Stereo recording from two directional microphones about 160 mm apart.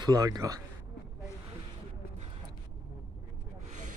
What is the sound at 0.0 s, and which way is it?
Speech, 25° right (ahead or behind).